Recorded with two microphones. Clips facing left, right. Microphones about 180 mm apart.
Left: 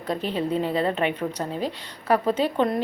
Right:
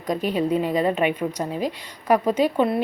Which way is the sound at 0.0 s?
10° right (ahead or behind).